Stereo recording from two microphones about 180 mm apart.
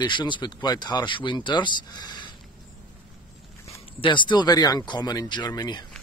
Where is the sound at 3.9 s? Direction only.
25° left (ahead or behind).